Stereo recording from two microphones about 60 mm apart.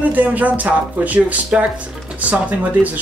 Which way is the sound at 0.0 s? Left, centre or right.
Right.